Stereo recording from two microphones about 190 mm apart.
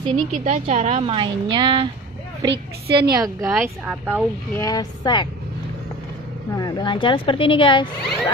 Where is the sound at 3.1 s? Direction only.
20° right (ahead or behind).